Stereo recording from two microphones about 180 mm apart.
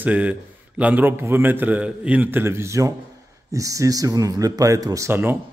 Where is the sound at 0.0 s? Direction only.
10° right (ahead or behind).